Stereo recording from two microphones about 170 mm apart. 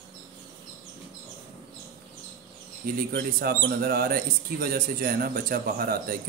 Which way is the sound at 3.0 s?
75° right (ahead or behind).